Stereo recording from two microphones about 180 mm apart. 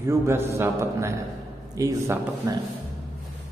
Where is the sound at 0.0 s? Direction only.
15° right (ahead or behind).